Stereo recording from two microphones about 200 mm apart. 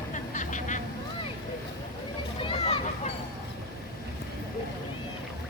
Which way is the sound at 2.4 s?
30° left (ahead or behind).